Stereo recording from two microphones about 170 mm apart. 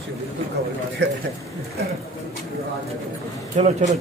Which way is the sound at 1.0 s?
90° right.